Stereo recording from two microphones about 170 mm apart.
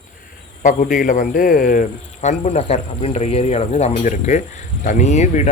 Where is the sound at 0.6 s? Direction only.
50° left (ahead or behind).